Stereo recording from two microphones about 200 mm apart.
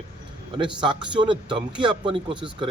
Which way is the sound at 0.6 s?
25° right (ahead or behind).